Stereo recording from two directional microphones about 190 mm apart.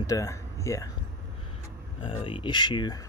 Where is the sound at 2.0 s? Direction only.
30° left (ahead or behind).